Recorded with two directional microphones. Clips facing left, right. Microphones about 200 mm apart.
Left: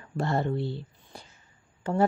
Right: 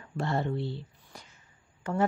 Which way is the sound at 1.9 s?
30° left (ahead or behind).